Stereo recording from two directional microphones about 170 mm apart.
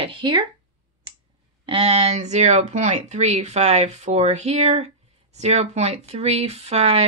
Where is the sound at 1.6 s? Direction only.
35° right (ahead or behind).